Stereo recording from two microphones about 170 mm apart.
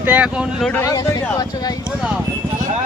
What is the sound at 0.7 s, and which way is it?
Speech, 20° left (ahead or behind).